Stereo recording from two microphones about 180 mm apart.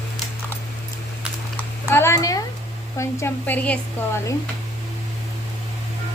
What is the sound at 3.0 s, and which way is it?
Speech, 15° left (ahead or behind).